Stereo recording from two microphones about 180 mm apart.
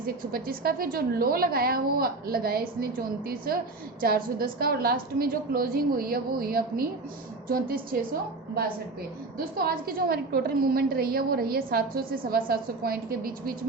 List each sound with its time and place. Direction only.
0.0 s a woman's voice: 55° right (ahead or behind)
9.4 s a woman's voice: 55° right (ahead or behind)